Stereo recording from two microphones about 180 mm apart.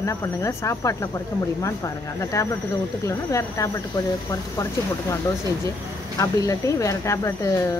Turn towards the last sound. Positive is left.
turn(degrees=15)  # may be behind; listen again after turning